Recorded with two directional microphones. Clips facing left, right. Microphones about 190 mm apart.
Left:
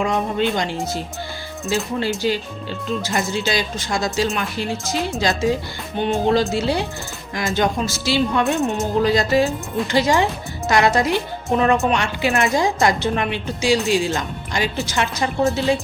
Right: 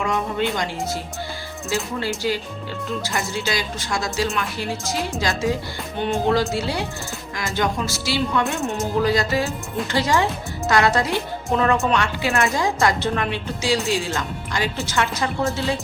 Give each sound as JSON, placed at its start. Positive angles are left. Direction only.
{"t": 0.0, "sound": "speech", "side_deg": 25}
{"t": 1.7, "sound": "speech", "side_deg": 20}